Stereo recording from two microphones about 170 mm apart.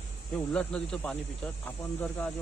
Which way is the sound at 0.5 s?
5° left (ahead or behind).